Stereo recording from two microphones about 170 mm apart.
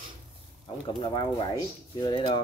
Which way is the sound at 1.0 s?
25° left (ahead or behind).